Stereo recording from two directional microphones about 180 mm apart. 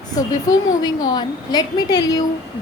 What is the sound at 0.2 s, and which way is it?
Speech, 20° left (ahead or behind).